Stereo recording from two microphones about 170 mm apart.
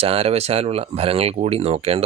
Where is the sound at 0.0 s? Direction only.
35° right (ahead or behind).